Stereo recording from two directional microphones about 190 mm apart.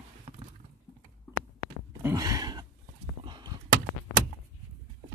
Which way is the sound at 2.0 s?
15° right (ahead or behind).